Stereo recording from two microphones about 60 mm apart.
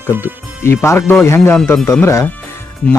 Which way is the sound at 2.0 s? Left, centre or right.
Left.